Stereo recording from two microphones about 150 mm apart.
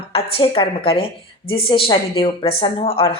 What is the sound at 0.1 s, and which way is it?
A woman's voice, 40° left (ahead or behind).